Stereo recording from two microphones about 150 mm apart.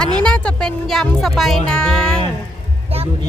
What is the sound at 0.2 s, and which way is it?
Speech, 5° left (ahead or behind).